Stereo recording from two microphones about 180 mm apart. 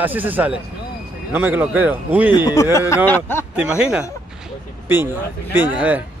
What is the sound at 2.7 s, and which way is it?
Speech, 15° left (ahead or behind).